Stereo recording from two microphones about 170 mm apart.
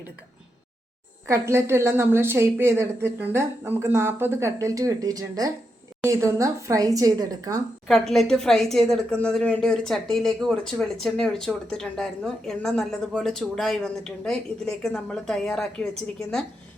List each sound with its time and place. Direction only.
1.3 s a woman's voice: 15° right (ahead or behind)
7.9 s speech: centre (ahead or behind)